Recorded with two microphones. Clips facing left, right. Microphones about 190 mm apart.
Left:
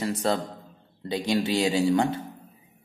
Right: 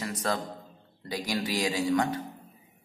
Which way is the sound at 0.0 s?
30° left (ahead or behind).